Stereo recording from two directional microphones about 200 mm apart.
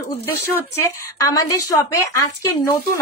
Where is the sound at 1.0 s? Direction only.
15° left (ahead or behind).